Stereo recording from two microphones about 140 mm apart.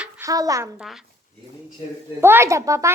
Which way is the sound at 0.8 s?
5° right (ahead or behind).